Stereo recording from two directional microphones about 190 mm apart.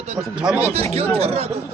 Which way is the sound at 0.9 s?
35° right (ahead or behind).